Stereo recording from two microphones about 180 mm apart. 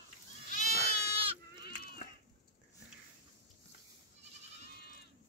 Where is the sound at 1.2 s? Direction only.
30° right (ahead or behind).